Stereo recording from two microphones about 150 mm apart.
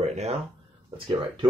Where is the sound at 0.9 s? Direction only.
35° right (ahead or behind).